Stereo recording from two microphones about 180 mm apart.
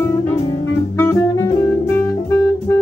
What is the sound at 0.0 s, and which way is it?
Music, 15° left (ahead or behind).